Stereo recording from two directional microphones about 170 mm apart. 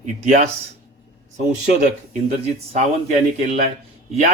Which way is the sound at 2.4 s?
40° right (ahead or behind).